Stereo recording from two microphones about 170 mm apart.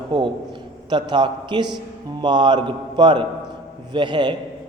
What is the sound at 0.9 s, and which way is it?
Speech, 25° right (ahead or behind).